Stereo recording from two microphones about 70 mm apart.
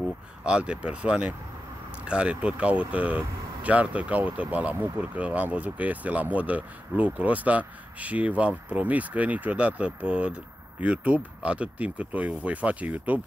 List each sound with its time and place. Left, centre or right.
0.5 s speech: centre